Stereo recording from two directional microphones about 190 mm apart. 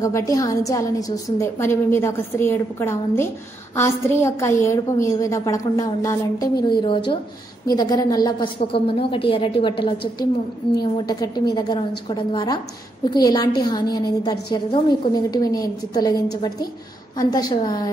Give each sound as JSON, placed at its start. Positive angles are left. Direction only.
{"t": 0.0, "sound": "a woman's voice", "side_deg": 15}